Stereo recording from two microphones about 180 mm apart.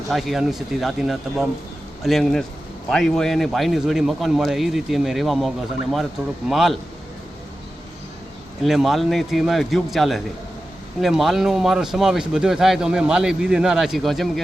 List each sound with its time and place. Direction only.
0.1 s speech: centre (ahead or behind)
8.6 s speech: centre (ahead or behind)